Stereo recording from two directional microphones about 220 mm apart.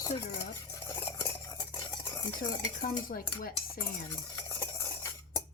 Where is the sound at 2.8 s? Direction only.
40° left (ahead or behind).